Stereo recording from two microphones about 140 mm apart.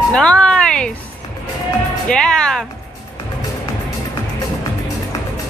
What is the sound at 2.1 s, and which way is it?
Music, 5° left (ahead or behind).